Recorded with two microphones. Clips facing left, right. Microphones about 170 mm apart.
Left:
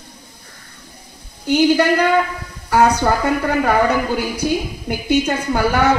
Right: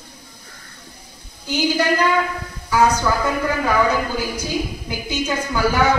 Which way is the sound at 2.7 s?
60° left (ahead or behind).